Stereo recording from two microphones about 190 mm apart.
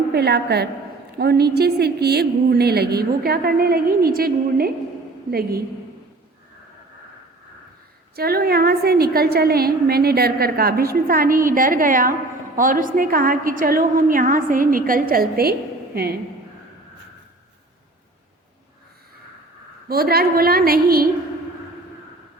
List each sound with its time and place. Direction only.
0.1 s a woman's voice: 60° right (ahead or behind)
8.1 s a woman's voice: 55° right (ahead or behind)
19.9 s a woman's voice: 55° right (ahead or behind)